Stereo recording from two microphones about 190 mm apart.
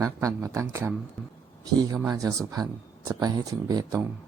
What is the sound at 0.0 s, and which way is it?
Speech, 15° right (ahead or behind).